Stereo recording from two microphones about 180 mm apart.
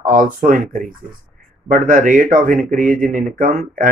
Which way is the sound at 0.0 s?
50° right (ahead or behind).